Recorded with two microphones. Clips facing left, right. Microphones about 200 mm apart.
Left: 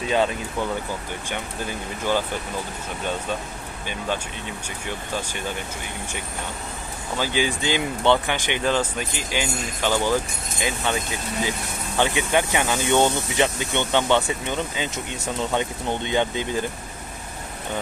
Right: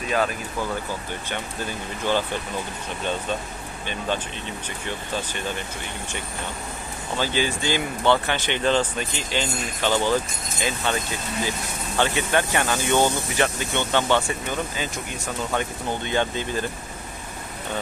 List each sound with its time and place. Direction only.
0.1 s speech: 25° left (ahead or behind)
7.2 s speech: 15° left (ahead or behind)